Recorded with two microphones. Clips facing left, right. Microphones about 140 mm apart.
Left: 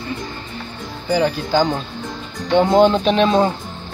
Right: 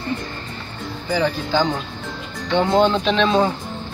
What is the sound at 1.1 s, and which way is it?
Speech, 10° left (ahead or behind).